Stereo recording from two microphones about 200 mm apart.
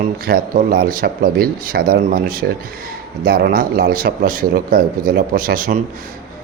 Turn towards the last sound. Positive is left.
turn(degrees=-45)  # may be behind; listen again after turning